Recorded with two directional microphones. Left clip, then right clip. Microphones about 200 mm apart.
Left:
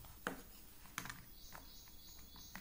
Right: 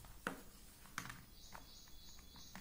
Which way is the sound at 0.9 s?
5° left (ahead or behind).